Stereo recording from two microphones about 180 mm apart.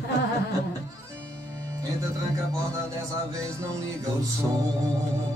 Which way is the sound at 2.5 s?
15° right (ahead or behind).